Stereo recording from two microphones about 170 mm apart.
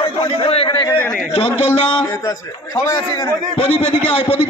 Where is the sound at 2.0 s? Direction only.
20° left (ahead or behind).